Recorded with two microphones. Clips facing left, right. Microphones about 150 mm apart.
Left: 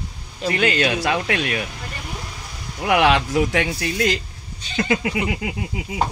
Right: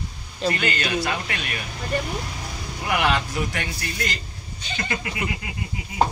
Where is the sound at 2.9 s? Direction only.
90° left.